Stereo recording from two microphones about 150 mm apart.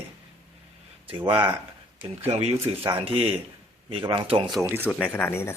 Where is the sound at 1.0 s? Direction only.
35° right (ahead or behind).